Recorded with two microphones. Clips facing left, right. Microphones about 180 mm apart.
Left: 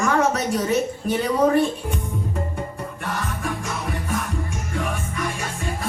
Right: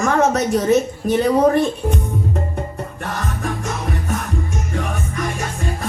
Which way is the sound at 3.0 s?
40° right (ahead or behind).